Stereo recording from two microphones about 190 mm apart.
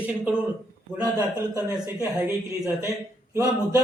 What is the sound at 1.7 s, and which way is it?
A man's voice, 10° right (ahead or behind).